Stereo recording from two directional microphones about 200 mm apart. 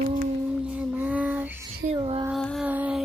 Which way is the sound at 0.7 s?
5° right (ahead or behind).